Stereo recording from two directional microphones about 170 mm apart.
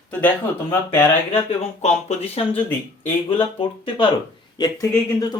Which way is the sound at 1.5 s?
40° left (ahead or behind).